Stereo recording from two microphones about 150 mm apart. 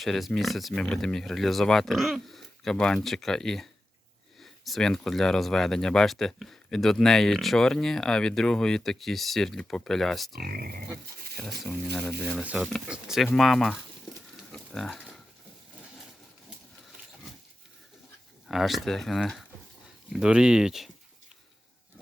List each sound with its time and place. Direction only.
0.0 s speech: centre (ahead or behind)
10.3 s speech: 80° right
11.0 s a sound: 90° right
12.3 s speech: 10° right (ahead or behind)
14.3 s a sound: centre (ahead or behind)
18.4 s speech: centre (ahead or behind)